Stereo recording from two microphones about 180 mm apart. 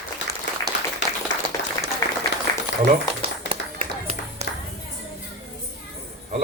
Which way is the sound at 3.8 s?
35° right (ahead or behind).